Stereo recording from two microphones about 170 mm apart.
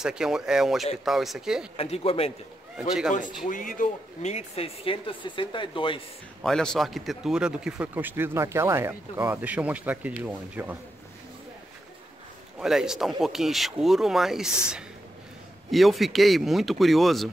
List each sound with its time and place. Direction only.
0.0 s speech: 5° right (ahead or behind)
1.8 s speech: 35° left (ahead or behind)
3.4 s speech: 50° left (ahead or behind); by 6.0 s 30° left (ahead or behind)
6.4 s speech: 5° left (ahead or behind)
12.5 s speech: 5° right (ahead or behind)